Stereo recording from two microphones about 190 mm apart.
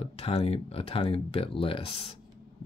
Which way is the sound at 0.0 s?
35° left (ahead or behind).